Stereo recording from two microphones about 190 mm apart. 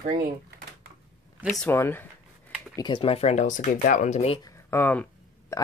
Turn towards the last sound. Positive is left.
turn(degrees=15)  # may be behind; listen again after turning